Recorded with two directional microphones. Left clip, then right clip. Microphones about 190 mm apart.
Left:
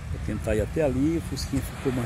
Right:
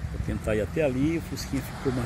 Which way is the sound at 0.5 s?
15° left (ahead or behind).